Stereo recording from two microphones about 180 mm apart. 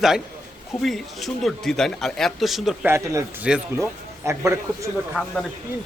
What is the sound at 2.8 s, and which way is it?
Speech, 15° right (ahead or behind).